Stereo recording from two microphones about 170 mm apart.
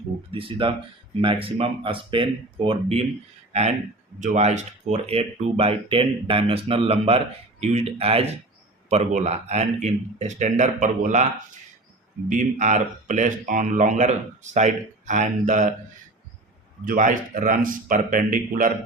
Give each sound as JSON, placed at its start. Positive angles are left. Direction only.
{"t": 0.3, "sound": "speech", "side_deg": -30}
{"t": 16.8, "sound": "speech", "side_deg": -50}